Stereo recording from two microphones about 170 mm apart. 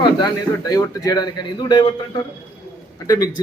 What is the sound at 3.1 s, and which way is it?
Speech, 20° left (ahead or behind).